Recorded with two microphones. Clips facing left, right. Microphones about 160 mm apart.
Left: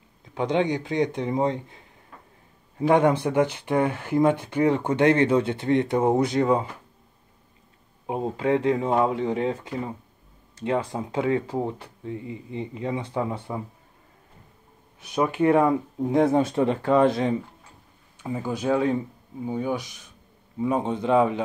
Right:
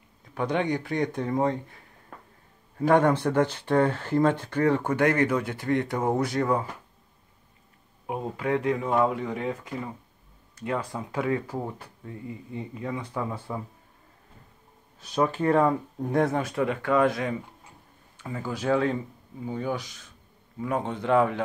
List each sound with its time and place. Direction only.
0.3 s speech: 20° left (ahead or behind)
2.1 s a sound: 45° right (ahead or behind)
2.9 s speech: 15° left (ahead or behind)
8.1 s speech: 25° left (ahead or behind)
15.0 s speech: 15° left (ahead or behind)
18.2 s speech: 20° left (ahead or behind)